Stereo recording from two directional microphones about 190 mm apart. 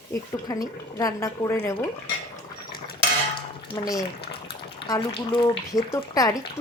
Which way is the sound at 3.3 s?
20° left (ahead or behind).